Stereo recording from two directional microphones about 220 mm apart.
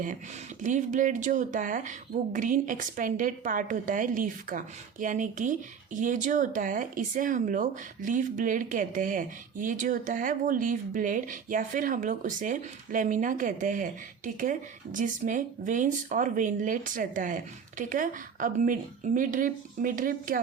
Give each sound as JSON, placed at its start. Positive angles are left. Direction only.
{"t": 0.6, "sound": "speech", "side_deg": -35}
{"t": 14.9, "sound": "speech", "side_deg": -35}